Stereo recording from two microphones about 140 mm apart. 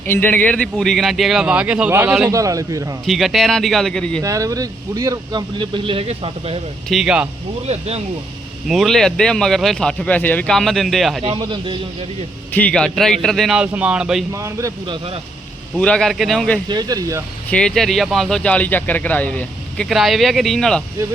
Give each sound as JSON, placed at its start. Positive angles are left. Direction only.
{"t": 0.1, "sound": "speech", "side_deg": 15}
{"t": 2.3, "sound": "a man's voice", "side_deg": -25}
{"t": 3.1, "sound": "speech", "side_deg": 0}
{"t": 4.2, "sound": "speech", "side_deg": -25}
{"t": 6.8, "sound": "speech", "side_deg": -5}
{"t": 7.7, "sound": "speech", "side_deg": -45}
{"t": 8.6, "sound": "speech", "side_deg": 0}
{"t": 11.2, "sound": "speech", "side_deg": -40}
{"t": 12.5, "sound": "speech", "side_deg": 10}
{"t": 14.3, "sound": "a man's voice", "side_deg": -20}
{"t": 14.8, "sound": "speech", "side_deg": -40}
{"t": 15.8, "sound": "speech", "side_deg": 5}
{"t": 16.6, "sound": "a man's voice", "side_deg": -30}
{"t": 17.5, "sound": "speech", "side_deg": 5}